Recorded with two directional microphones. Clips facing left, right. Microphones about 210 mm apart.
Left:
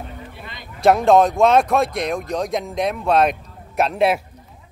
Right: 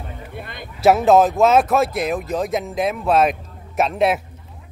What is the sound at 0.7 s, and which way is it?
Speech, 5° right (ahead or behind).